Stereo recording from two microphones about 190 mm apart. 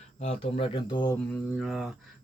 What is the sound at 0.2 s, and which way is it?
Speech, 35° left (ahead or behind).